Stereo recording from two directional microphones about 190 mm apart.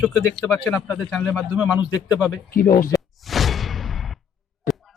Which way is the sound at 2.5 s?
45° left (ahead or behind).